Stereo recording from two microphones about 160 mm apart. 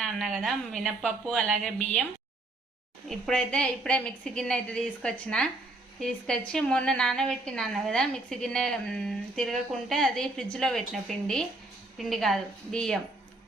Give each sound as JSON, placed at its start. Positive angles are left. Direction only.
{"t": 0.0, "sound": "a woman's voice", "side_deg": 0}
{"t": 3.1, "sound": "a woman's voice", "side_deg": 5}